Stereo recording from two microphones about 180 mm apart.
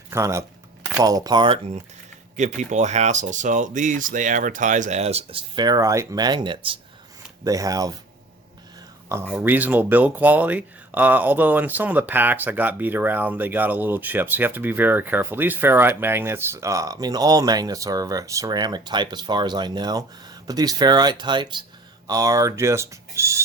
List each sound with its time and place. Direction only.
0.1 s speech: 15° right (ahead or behind)
2.3 s speech: 40° right (ahead or behind); by 7.9 s 20° right (ahead or behind)
9.0 s speech: 15° right (ahead or behind)